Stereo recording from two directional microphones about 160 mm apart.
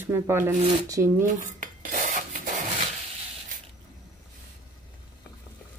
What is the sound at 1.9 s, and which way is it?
Rub, 50° right (ahead or behind).